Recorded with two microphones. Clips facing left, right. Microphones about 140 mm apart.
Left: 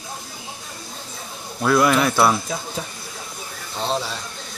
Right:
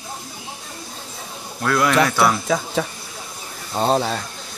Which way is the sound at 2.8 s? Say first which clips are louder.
Right 8 dB; 85° right.